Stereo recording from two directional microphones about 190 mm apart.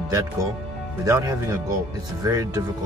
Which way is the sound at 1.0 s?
20° right (ahead or behind).